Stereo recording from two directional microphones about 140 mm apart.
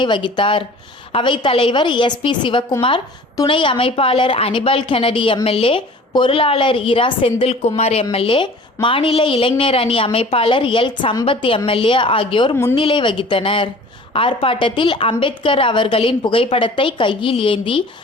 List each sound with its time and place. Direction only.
0.0 s a woman's voice: 35° left (ahead or behind)